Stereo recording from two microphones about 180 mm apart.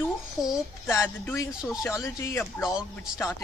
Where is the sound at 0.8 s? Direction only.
15° left (ahead or behind).